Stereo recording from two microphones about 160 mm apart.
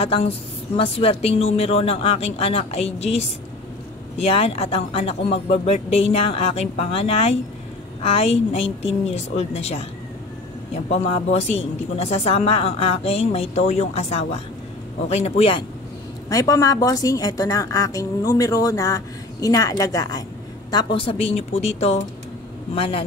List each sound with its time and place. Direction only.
0.0 s speech: 35° left (ahead or behind)
16.3 s a woman's voice: 20° left (ahead or behind)
20.7 s speech: 35° left (ahead or behind)